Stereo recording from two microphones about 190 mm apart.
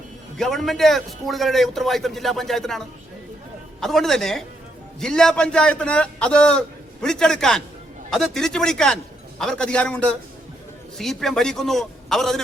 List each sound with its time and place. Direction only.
0.3 s a man's voice: centre (ahead or behind)